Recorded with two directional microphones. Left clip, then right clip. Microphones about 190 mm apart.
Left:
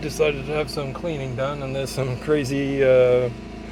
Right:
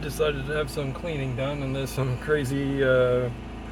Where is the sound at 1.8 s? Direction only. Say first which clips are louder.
Left 4 dB; 10° left (ahead or behind).